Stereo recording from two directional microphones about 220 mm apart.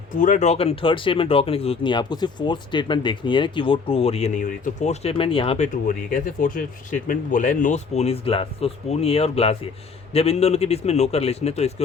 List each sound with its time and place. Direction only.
0.2 s speech: 35° left (ahead or behind)
5.7 s speech: 35° left (ahead or behind)